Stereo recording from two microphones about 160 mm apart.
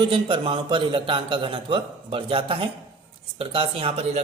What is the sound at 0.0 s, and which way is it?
A man's voice, 30° right (ahead or behind).